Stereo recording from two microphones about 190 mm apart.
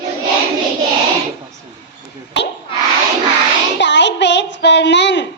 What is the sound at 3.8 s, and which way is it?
A child's voice, 70° left (ahead or behind).